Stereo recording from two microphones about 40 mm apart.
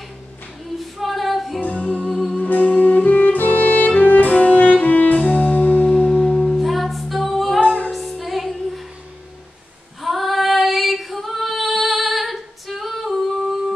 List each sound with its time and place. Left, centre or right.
0.7 s female singing: centre
1.6 s music: left
2.4 s music: left
6.4 s music: centre
7.6 s music: left
7.9 s music: centre
10.0 s female singing: centre